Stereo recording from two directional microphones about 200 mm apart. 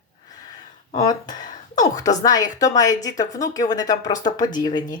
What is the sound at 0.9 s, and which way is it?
Speech, 20° left (ahead or behind).